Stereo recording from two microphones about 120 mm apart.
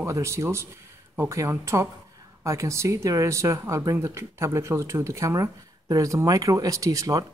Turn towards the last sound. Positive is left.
turn(degrees=-30)  # may be behind; listen again after turning